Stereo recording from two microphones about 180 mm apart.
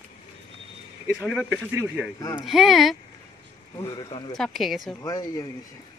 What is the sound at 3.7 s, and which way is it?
Speech, 20° left (ahead or behind).